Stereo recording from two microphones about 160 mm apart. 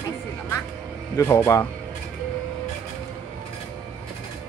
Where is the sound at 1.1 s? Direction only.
20° left (ahead or behind).